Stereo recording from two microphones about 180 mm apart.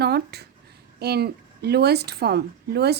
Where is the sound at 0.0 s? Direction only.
65° right (ahead or behind).